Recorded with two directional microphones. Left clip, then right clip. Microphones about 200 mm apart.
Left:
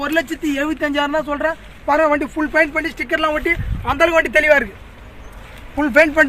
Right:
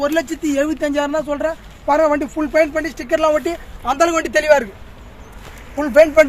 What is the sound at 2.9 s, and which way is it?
Speech, 35° right (ahead or behind).